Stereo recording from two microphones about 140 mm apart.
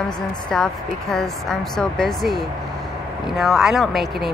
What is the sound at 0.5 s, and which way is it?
Speech, 5° left (ahead or behind).